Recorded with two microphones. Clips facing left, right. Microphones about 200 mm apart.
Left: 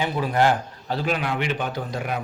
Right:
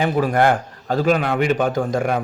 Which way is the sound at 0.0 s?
50° right (ahead or behind).